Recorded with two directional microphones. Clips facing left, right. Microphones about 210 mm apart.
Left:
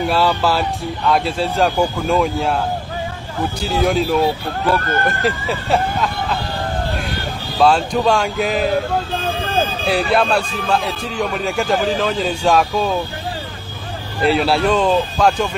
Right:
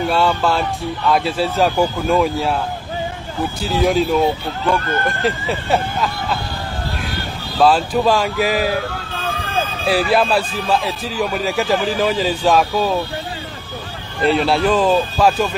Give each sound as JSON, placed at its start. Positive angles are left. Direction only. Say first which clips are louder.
{"t": 0.1, "sound": "speech", "louder": "even", "side_deg": 0}
{"t": 3.6, "sound": "speech", "louder": "right 1 dB", "side_deg": 0}
{"t": 4.8, "sound": "speech", "louder": "left 1 dB", "side_deg": 50}
{"t": 5.2, "sound": "speech", "louder": "even", "side_deg": 0}
{"t": 7.5, "sound": "speech", "louder": "even", "side_deg": -5}
{"t": 9.8, "sound": "speech", "louder": "right 2 dB", "side_deg": 0}
{"t": 14.2, "sound": "speech", "louder": "even", "side_deg": 0}